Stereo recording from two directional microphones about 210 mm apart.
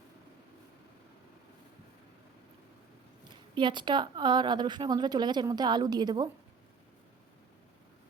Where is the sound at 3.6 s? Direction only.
20° right (ahead or behind).